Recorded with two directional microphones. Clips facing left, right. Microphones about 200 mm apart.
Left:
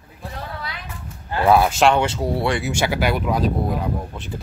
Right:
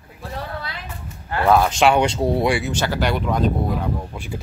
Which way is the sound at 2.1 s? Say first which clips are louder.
Right 3 dB; 25° right (ahead or behind).